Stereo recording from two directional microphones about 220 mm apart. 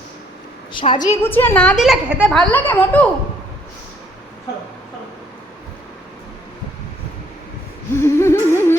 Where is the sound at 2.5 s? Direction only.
10° left (ahead or behind).